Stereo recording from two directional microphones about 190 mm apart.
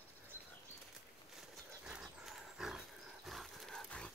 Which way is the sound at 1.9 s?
5° right (ahead or behind).